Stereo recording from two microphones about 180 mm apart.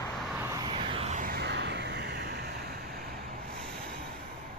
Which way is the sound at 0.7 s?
30° right (ahead or behind).